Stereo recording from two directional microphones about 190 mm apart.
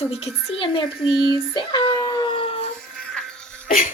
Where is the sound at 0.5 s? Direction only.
25° left (ahead or behind).